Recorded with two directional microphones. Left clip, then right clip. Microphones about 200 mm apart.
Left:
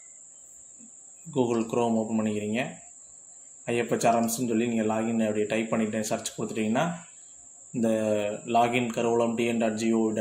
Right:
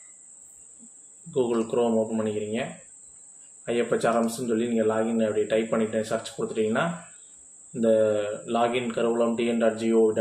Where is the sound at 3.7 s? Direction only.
40° left (ahead or behind).